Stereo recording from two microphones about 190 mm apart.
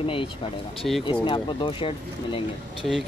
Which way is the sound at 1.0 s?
25° left (ahead or behind).